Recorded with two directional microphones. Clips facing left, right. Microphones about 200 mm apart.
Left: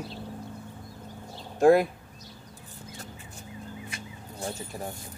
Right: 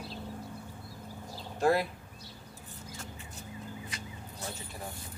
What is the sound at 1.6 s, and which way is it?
Speech, 50° left (ahead or behind).